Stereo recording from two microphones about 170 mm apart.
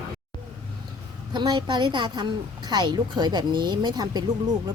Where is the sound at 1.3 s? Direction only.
25° right (ahead or behind).